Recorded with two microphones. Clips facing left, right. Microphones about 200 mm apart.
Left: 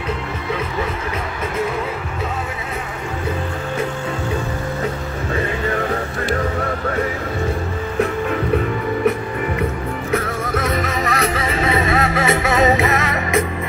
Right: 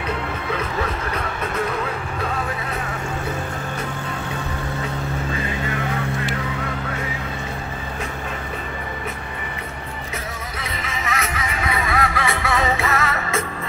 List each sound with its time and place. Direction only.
10.1 s music: 45° left (ahead or behind); by 13.4 s 20° left (ahead or behind)